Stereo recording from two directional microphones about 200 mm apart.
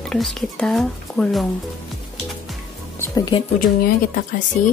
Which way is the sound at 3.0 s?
20° left (ahead or behind).